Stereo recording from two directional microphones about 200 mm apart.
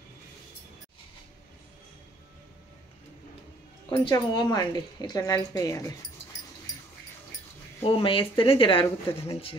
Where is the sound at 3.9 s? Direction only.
25° left (ahead or behind).